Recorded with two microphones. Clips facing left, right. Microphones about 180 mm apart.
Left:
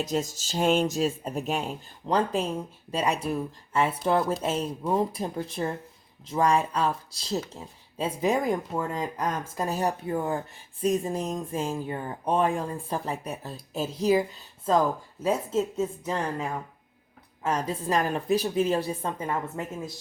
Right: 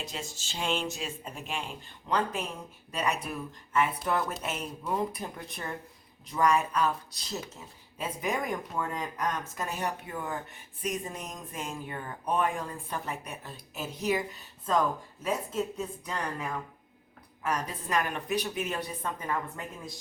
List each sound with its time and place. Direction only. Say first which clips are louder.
0.0 s speech: left 11 dB; 40° left (ahead or behind)